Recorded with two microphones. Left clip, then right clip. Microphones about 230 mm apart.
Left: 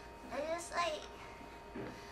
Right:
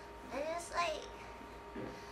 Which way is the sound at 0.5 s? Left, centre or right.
Right.